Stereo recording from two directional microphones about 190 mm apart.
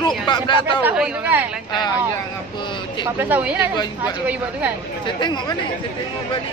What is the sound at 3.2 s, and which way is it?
Speech, 10° right (ahead or behind).